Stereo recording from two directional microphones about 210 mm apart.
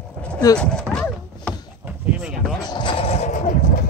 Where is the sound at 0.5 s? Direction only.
5° left (ahead or behind).